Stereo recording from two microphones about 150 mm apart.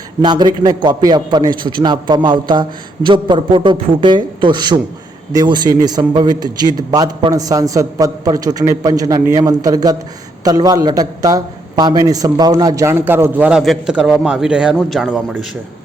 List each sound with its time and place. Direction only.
0.2 s a man's voice: 30° right (ahead or behind); by 15.4 s 5° right (ahead or behind)